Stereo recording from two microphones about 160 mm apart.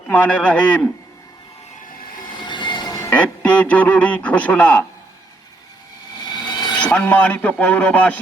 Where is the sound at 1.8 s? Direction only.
55° left (ahead or behind).